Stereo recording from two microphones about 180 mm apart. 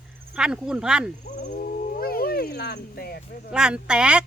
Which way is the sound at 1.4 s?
55° left (ahead or behind).